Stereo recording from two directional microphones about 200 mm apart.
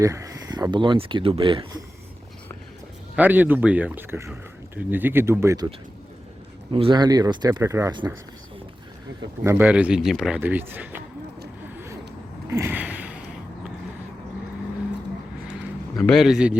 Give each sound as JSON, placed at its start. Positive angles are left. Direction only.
{"t": 0.0, "sound": "speech", "side_deg": -15}
{"t": 3.2, "sound": "speech", "side_deg": -10}
{"t": 6.7, "sound": "speech", "side_deg": -25}
{"t": 9.4, "sound": "speech", "side_deg": -10}
{"t": 12.5, "sound": "a sound", "side_deg": -15}
{"t": 16.0, "sound": "a man's voice", "side_deg": 0}